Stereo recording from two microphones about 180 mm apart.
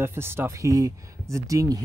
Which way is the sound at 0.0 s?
15° right (ahead or behind).